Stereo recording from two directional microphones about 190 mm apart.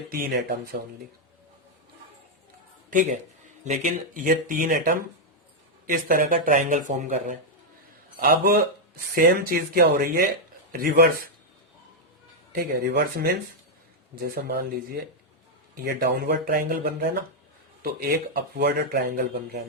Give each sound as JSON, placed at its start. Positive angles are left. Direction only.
{"t": 0.1, "sound": "speech", "side_deg": -50}
{"t": 2.9, "sound": "speech", "side_deg": -45}
{"t": 12.5, "sound": "speech", "side_deg": -55}
{"t": 18.3, "sound": "speech", "side_deg": -55}